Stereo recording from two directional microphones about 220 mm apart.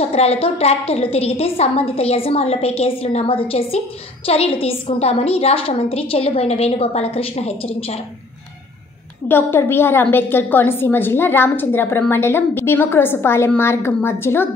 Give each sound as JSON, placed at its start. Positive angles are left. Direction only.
{"t": 0.0, "sound": "a woman's voice", "side_deg": 30}
{"t": 9.3, "sound": "a woman's voice", "side_deg": 10}